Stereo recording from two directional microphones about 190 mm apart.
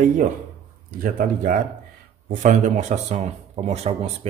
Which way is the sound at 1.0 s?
45° right (ahead or behind).